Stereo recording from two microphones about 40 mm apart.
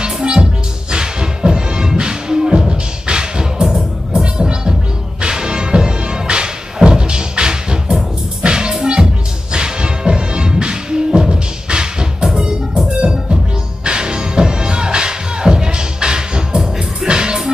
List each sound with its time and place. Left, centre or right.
0.0 s music: right